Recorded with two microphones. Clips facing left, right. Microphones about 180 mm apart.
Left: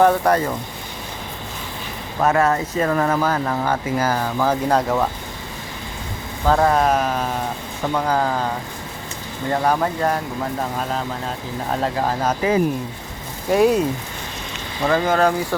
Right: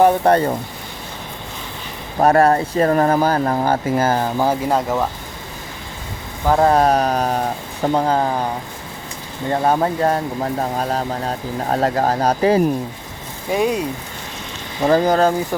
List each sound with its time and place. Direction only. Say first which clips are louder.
0.2 s speech: right 3 dB; 30° right (ahead or behind)
2.2 s speech: right 4 dB; 35° right (ahead or behind)
4.7 s speech: even; centre (ahead or behind)
6.6 s speech: right 5 dB; 35° right (ahead or behind)
9.5 s speech: right 2 dB; 25° right (ahead or behind)
13.5 s speech: left 3 dB; centre (ahead or behind)
14.8 s speech: right 3 dB; 35° right (ahead or behind)